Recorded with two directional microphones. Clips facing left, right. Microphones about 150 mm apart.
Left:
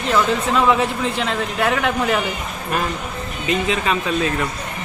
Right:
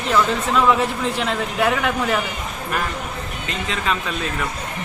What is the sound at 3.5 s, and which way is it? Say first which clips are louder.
Speech: left 5 dB; 10° left (ahead or behind).